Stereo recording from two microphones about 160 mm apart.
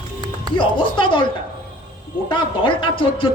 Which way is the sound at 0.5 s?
30° left (ahead or behind).